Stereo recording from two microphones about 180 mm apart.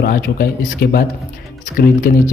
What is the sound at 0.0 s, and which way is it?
Speech, 60° left (ahead or behind).